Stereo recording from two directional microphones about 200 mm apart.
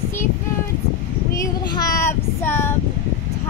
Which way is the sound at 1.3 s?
15° left (ahead or behind).